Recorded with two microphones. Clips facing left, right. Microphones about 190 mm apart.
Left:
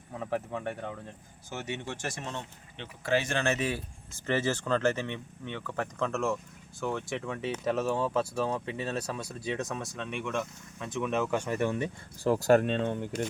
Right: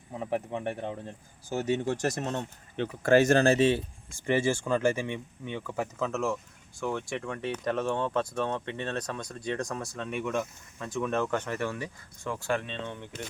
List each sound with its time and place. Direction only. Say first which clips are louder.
0.1 s speech: right 2 dB; 20° right (ahead or behind)
4.1 s speech: right 3 dB; 10° right (ahead or behind); by 11.9 s 20° left (ahead or behind)
12.2 s speech: left 8 dB; 40° left (ahead or behind)